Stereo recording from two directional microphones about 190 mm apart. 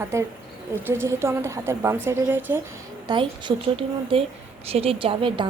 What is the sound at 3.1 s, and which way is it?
A woman's voice, 25° right (ahead or behind).